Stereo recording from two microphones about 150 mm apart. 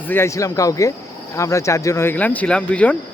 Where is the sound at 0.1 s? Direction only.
20° left (ahead or behind).